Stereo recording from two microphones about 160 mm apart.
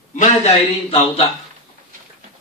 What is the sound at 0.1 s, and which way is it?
A man's voice, 45° left (ahead or behind).